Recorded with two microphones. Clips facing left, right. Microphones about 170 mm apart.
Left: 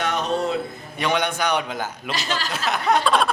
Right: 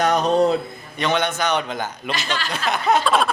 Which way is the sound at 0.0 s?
40° right (ahead or behind).